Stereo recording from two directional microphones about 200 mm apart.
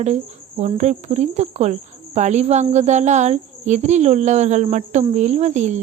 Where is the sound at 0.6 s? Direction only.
35° right (ahead or behind).